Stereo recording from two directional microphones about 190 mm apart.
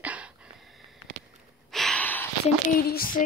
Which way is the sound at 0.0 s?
5° right (ahead or behind).